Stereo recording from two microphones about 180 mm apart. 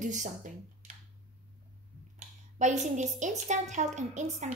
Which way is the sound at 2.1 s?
40° right (ahead or behind).